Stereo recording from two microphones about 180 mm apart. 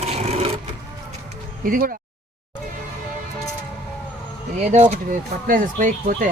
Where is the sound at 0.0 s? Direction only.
35° right (ahead or behind).